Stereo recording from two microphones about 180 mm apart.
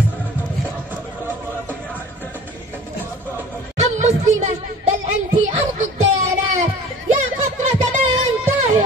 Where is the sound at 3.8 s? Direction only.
40° right (ahead or behind).